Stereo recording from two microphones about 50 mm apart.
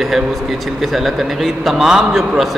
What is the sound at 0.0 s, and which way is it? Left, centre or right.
A man's voice, centre.